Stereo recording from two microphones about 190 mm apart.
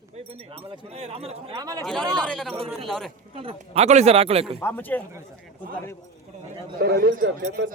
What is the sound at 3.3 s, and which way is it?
A man's voice, 30° right (ahead or behind).